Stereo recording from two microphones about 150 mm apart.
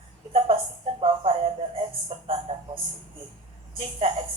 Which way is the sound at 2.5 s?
45° right (ahead or behind).